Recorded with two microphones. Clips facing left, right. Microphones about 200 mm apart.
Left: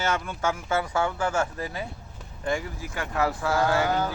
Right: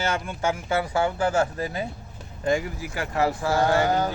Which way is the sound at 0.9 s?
35° right (ahead or behind).